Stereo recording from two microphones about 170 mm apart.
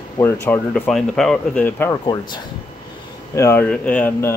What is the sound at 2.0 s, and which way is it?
Speech, 25° left (ahead or behind).